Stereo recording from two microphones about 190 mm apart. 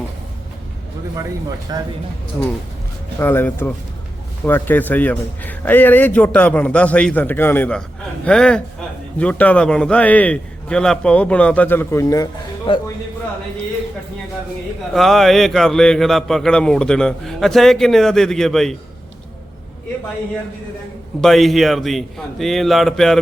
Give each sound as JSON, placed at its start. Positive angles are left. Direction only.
{"t": 1.1, "sound": "speech", "side_deg": -20}
{"t": 3.2, "sound": "a man's voice", "side_deg": 10}
{"t": 14.9, "sound": "a man's voice", "side_deg": 0}
{"t": 21.2, "sound": "a man's voice", "side_deg": 0}